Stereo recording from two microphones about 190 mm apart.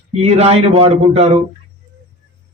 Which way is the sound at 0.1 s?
35° right (ahead or behind).